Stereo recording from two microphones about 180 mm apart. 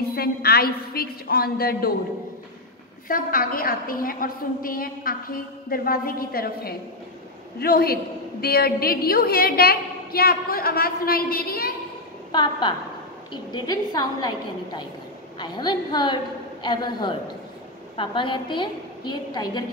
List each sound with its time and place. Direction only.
0.1 s a woman's voice: 60° left (ahead or behind)
3.1 s a woman's voice: 50° left (ahead or behind)
12.3 s a woman's voice: 25° left (ahead or behind)